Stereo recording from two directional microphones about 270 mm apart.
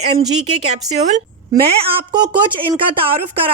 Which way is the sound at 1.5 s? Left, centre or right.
Centre.